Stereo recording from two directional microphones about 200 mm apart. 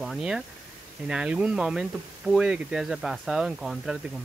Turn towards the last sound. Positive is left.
turn(degrees=0)  # may be behind; listen again after turning